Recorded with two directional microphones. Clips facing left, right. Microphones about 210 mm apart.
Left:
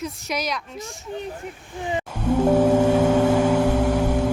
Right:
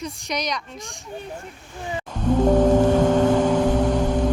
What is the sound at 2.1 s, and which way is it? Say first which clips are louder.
Gong: right 1 dB; 10° left (ahead or behind).